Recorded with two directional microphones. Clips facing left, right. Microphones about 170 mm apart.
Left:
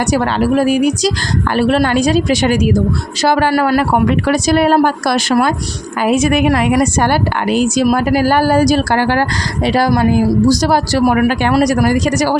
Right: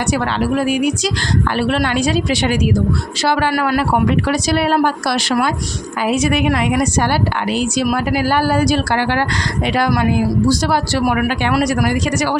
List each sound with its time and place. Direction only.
0.1 s a woman's voice: 40° left (ahead or behind)
3.8 s a woman's voice: 50° left (ahead or behind)